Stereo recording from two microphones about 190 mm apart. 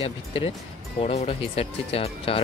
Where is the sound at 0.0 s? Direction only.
30° left (ahead or behind).